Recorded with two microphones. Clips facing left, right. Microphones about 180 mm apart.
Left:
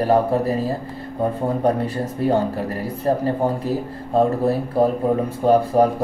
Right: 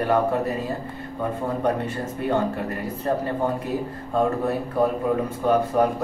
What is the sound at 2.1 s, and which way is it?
Speech, 35° left (ahead or behind).